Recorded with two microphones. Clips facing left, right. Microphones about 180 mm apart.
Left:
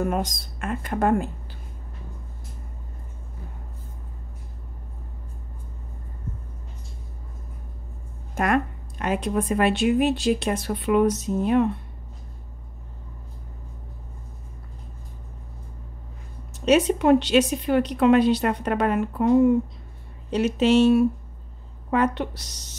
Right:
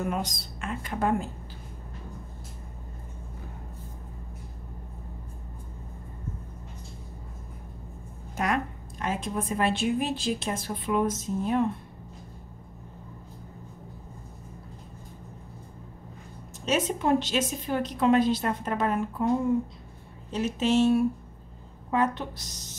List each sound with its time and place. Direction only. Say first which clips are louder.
0.0 s speech: left 5 dB; 45° left (ahead or behind)
8.4 s a woman's voice: left 5 dB; 60° left (ahead or behind)
16.6 s a woman's voice: left 8 dB; 70° left (ahead or behind)
20.2 s a woman's voice: left 6 dB; 75° left (ahead or behind)